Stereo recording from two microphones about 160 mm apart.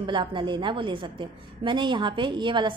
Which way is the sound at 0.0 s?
30° right (ahead or behind).